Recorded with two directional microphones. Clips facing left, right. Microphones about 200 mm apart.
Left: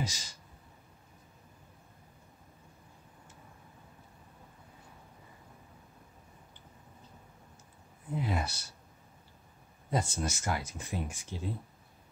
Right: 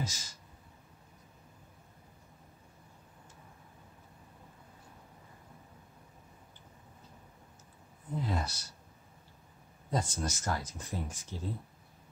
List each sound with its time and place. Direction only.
0.0 s speech: 15° left (ahead or behind)
8.1 s speech: 10° left (ahead or behind)
9.8 s speech: 10° left (ahead or behind)